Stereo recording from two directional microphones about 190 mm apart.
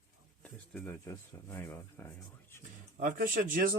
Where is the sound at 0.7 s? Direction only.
10° left (ahead or behind).